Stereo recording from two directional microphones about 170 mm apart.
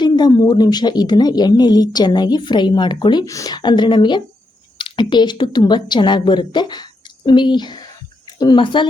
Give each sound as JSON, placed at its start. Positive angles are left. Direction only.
{"t": 0.0, "sound": "a woman's voice", "side_deg": 25}